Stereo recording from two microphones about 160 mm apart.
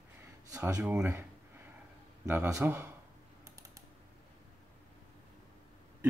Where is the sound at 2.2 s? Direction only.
15° right (ahead or behind).